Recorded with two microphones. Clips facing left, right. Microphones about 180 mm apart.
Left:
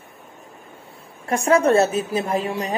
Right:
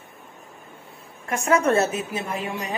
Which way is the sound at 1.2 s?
35° left (ahead or behind).